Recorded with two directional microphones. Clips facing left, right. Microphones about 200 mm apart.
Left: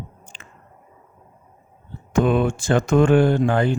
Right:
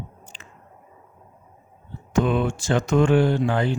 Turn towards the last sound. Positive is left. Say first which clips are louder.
# left 3 dB
turn(degrees=50)  # may be behind; listen again after turning